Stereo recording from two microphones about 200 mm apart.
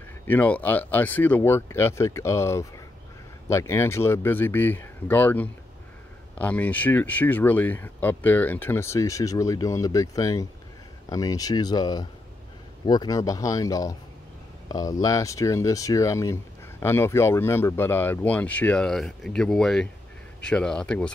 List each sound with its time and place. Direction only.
0.3 s speech: 10° left (ahead or behind)